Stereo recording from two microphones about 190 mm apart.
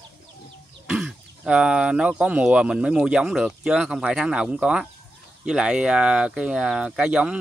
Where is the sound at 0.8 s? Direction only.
5° right (ahead or behind).